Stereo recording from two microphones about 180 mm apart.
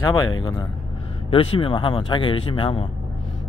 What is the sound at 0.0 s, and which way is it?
Speech, 20° left (ahead or behind).